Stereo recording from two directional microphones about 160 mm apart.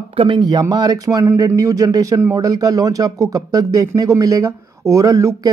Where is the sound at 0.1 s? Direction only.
30° right (ahead or behind).